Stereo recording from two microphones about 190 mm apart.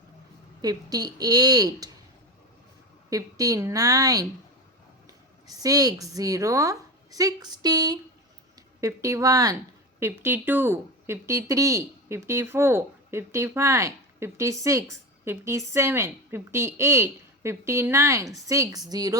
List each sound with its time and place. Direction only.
0.6 s a woman's voice: 20° right (ahead or behind)
3.1 s a woman's voice: 20° right (ahead or behind)
5.5 s a woman's voice: 20° right (ahead or behind)